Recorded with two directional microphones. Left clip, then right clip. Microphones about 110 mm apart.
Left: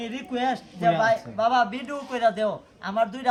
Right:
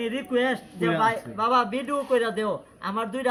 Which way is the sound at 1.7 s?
90° left.